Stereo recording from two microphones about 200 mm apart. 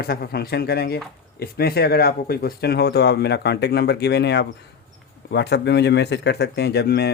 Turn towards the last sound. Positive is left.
turn(degrees=55)  # may be behind; listen again after turning